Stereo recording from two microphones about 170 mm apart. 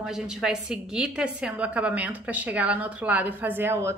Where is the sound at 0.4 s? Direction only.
5° right (ahead or behind).